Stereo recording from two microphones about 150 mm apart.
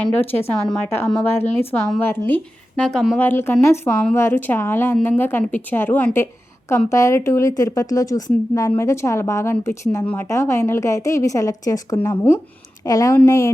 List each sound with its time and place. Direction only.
0.0 s speech: 15° left (ahead or behind)
3.2 s a woman's voice: 15° left (ahead or behind)